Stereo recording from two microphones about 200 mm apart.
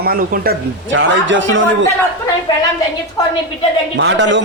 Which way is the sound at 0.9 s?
70° right (ahead or behind).